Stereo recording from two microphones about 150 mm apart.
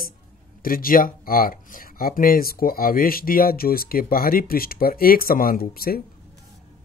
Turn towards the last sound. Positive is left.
turn(degrees=80)